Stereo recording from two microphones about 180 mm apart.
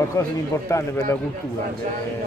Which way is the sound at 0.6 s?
15° left (ahead or behind).